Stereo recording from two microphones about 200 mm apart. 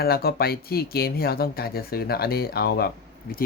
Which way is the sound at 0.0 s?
50° left (ahead or behind).